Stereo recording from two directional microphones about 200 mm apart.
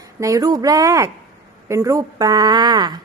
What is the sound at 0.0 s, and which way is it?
Speech, 15° right (ahead or behind).